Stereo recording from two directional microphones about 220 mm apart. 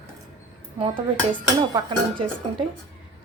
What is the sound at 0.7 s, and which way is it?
A woman's voice, 25° right (ahead or behind).